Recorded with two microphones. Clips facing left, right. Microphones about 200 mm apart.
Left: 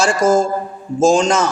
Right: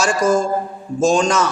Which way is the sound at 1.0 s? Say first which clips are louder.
Left 3 dB; 90° left.